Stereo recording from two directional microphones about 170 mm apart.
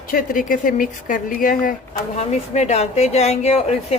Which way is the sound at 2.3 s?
40° left (ahead or behind).